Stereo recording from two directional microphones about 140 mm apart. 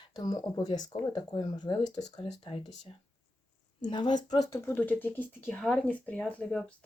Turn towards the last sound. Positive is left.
turn(degrees=5)  # may be behind; listen again after turning